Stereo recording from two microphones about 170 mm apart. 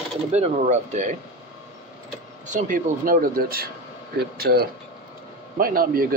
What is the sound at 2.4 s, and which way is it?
Speech, 50° right (ahead or behind).